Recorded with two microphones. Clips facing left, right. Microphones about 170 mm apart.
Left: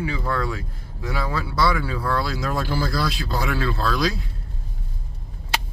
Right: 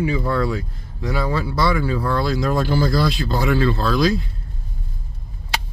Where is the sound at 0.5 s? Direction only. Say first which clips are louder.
Right 6 dB; centre (ahead or behind).